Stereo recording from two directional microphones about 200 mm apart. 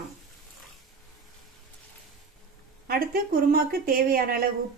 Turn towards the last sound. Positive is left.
turn(degrees=-45)  # may be behind; listen again after turning